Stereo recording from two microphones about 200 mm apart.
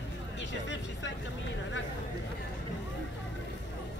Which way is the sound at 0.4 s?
65° left (ahead or behind).